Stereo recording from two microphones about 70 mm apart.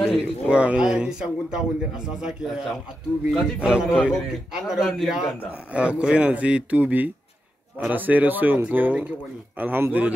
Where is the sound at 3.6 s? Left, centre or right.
Centre.